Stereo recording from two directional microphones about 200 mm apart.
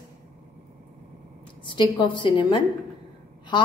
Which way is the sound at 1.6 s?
25° left (ahead or behind).